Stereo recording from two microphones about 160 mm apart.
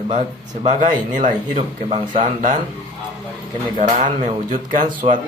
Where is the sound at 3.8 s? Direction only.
50° right (ahead or behind).